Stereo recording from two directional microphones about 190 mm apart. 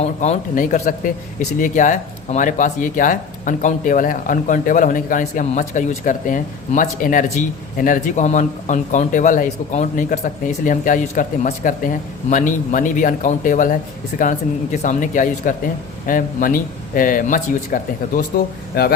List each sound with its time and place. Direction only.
0.0 s speech: 40° left (ahead or behind); by 18.9 s 55° left (ahead or behind)